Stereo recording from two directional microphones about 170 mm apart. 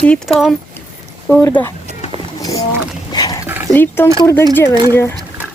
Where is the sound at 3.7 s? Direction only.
10° left (ahead or behind).